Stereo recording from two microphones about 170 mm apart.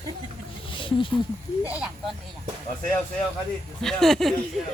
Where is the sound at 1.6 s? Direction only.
5° right (ahead or behind).